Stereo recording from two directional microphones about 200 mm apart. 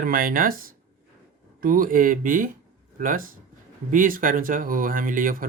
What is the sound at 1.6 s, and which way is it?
Speech, 45° right (ahead or behind).